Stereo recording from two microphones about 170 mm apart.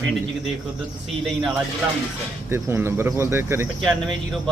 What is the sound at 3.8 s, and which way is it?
Speech, centre (ahead or behind).